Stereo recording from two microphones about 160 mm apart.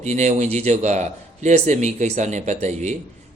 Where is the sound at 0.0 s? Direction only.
45° right (ahead or behind).